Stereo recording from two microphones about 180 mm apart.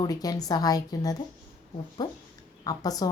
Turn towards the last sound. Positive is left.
turn(degrees=20)  # may be behind; listen again after turning